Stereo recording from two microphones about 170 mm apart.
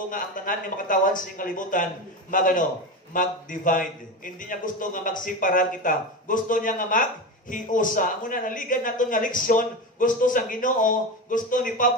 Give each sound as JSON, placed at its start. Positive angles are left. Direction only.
{"t": 0.1, "sound": "a man's voice", "side_deg": 50}